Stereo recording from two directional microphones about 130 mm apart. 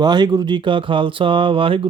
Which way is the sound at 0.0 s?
35° right (ahead or behind).